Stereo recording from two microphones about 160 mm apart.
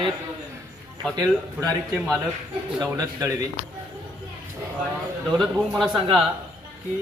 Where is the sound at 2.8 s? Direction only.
20° right (ahead or behind).